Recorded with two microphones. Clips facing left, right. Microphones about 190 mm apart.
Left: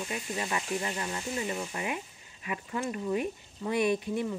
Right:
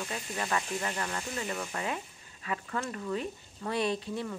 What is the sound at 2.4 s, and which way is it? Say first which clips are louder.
Speech: left 1 dB; 15° left (ahead or behind).